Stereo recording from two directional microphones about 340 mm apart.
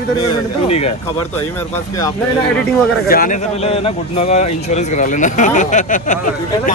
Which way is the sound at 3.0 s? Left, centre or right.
Left.